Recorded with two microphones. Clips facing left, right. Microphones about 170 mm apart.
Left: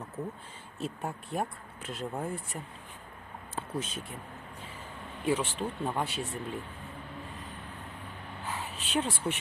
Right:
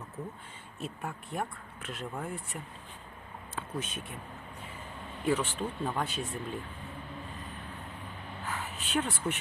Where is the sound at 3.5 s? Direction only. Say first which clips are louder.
Left 2 dB; 35° left (ahead or behind).